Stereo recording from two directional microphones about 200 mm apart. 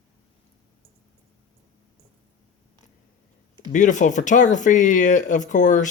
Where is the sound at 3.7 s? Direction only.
40° left (ahead or behind).